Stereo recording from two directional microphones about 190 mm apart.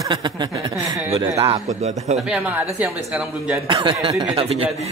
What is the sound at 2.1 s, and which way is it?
A man's voice, 5° right (ahead or behind).